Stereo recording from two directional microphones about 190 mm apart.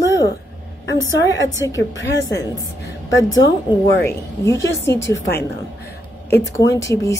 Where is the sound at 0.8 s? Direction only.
75° left (ahead or behind).